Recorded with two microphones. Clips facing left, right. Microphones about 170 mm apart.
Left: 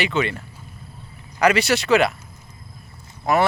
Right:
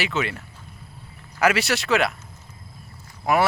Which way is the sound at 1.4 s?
Centre (ahead or behind).